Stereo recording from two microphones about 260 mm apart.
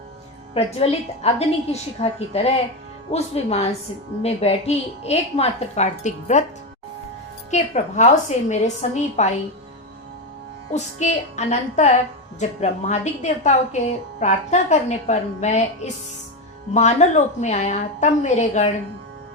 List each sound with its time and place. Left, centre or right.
0.5 s a woman's voice: left
7.5 s a woman's voice: left
10.7 s a woman's voice: left